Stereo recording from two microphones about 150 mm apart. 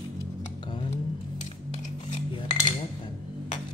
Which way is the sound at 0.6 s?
35° left (ahead or behind).